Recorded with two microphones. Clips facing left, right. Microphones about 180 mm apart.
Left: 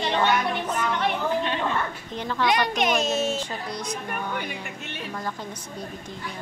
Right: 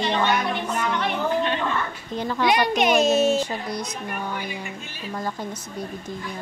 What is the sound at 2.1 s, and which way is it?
A woman's voice, 10° right (ahead or behind).